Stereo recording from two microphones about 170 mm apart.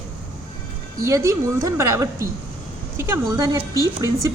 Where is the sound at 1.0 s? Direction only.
20° right (ahead or behind).